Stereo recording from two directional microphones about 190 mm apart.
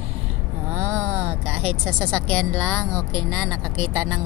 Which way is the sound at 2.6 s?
5° left (ahead or behind).